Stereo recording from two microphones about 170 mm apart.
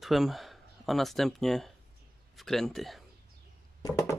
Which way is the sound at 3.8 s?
20° left (ahead or behind).